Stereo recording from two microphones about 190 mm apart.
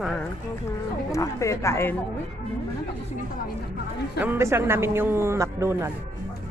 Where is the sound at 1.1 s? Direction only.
15° left (ahead or behind).